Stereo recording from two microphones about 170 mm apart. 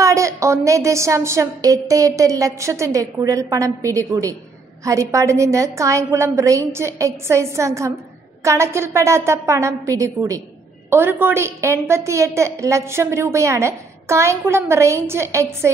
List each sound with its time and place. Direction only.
0.0 s a woman's voice: 20° right (ahead or behind)